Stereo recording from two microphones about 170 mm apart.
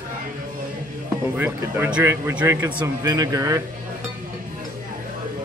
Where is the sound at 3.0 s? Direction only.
20° right (ahead or behind).